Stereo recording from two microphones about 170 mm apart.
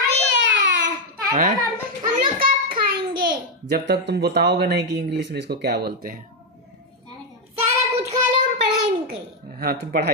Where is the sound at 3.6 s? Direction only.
70° right (ahead or behind); by 6.2 s 55° right (ahead or behind).